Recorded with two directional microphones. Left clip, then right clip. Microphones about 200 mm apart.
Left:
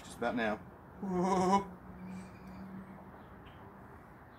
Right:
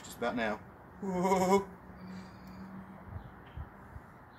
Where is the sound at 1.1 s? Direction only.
20° right (ahead or behind).